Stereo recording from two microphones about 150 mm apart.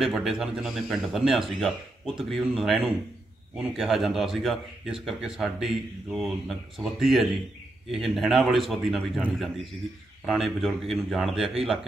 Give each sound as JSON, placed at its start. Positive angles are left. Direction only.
{"t": 0.0, "sound": "a man's voice", "side_deg": -5}
{"t": 10.2, "sound": "a man's voice", "side_deg": 0}